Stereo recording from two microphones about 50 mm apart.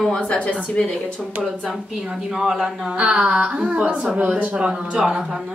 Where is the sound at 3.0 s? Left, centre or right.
Right.